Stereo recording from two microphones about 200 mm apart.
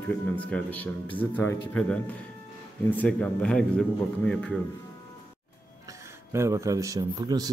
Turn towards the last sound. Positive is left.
turn(degrees=-15)  # may be behind; listen again after turning